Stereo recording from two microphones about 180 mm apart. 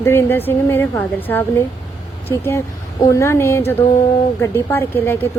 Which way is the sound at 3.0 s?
15° left (ahead or behind).